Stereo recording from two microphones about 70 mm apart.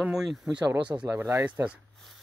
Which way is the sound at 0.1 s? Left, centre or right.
Centre.